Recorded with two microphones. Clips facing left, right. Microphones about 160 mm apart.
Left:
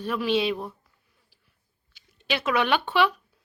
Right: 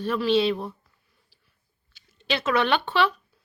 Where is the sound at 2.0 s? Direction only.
10° left (ahead or behind).